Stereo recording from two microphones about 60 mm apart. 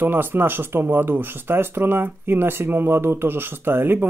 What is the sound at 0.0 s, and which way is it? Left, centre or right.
Speech, right.